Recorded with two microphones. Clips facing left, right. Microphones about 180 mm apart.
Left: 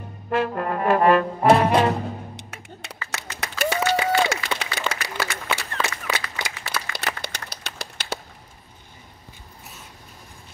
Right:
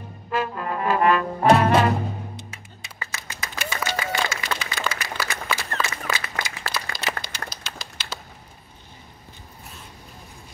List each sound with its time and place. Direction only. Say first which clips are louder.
0.3 s trombone: left 3 dB; 60° left (ahead or behind)
1.4 s music: right 2 dB; centre (ahead or behind)
2.3 s music: left 1 dB; 75° left (ahead or behind)
3.1 s applause: left 5 dB; 70° left (ahead or behind)
5.8 s a sound: left 1 dB; 65° left (ahead or behind)